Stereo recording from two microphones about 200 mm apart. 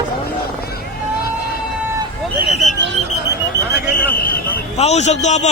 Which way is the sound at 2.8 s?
65° right (ahead or behind).